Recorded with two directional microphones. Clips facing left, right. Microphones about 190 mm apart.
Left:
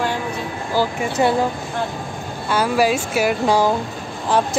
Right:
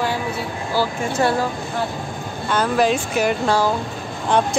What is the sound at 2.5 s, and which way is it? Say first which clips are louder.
Speech: left 1 dB; 10° left (ahead or behind).